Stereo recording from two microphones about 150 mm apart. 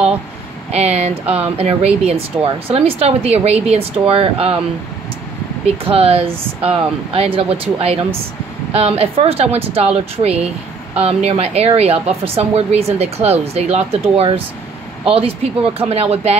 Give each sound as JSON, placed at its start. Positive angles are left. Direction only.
{"t": 0.7, "sound": "speech", "side_deg": -45}
{"t": 5.9, "sound": "speech", "side_deg": -40}